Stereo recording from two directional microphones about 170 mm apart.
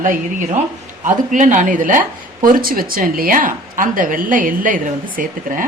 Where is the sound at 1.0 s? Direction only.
50° right (ahead or behind).